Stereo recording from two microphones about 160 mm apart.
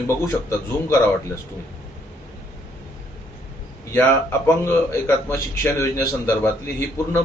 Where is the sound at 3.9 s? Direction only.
15° left (ahead or behind).